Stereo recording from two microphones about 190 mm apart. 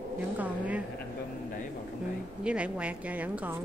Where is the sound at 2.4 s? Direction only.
5° right (ahead or behind).